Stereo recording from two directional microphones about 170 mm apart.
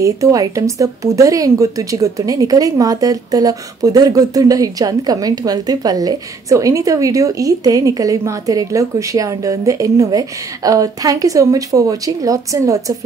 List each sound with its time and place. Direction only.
0.0 s a woman's voice: 20° right (ahead or behind)